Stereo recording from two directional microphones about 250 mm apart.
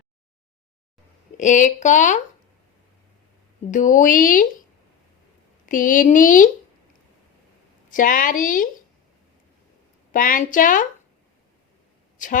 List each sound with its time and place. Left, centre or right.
1.4 s speech: left
3.7 s speech: left
5.6 s speech: left
7.9 s speech: left
10.1 s speech: left
12.1 s a sound: left